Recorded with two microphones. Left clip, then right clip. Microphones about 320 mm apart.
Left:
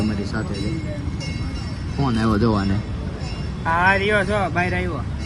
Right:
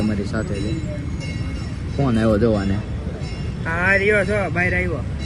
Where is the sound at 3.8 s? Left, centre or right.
Left.